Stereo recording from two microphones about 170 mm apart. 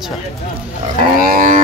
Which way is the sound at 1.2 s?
55° right (ahead or behind).